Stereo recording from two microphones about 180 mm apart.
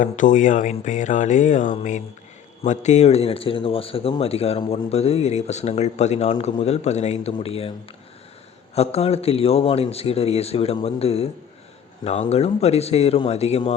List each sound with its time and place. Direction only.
0.0 s a man's voice: 45° left (ahead or behind)
8.7 s a man's voice: 35° left (ahead or behind)